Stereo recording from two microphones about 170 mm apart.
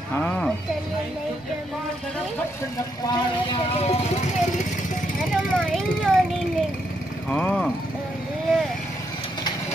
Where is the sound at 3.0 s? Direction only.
25° left (ahead or behind).